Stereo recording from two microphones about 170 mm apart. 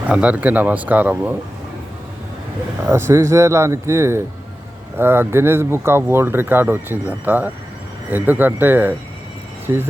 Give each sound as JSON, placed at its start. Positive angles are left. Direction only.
{"t": 0.1, "sound": "speech", "side_deg": -5}
{"t": 2.8, "sound": "speech", "side_deg": -15}